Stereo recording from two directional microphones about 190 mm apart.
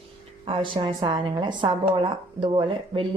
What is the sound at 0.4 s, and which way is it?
A woman's voice, 25° right (ahead or behind).